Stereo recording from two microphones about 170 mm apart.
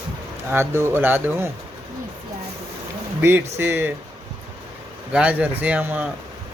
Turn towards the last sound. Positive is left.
turn(degrees=-10)  # may be behind; listen again after turning